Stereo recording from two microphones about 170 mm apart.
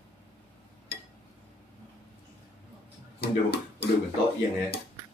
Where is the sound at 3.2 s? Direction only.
75° left (ahead or behind).